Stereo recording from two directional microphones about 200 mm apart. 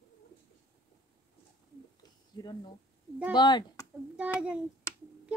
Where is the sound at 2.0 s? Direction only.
20° left (ahead or behind).